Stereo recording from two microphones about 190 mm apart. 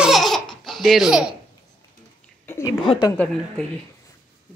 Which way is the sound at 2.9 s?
25° left (ahead or behind).